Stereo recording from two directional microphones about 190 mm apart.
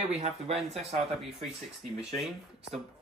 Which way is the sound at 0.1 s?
35° right (ahead or behind).